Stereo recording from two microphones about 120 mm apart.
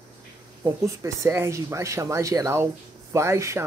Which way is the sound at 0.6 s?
25° right (ahead or behind).